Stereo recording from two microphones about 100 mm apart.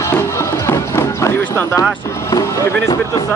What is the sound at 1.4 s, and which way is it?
Clip-clop, 20° left (ahead or behind).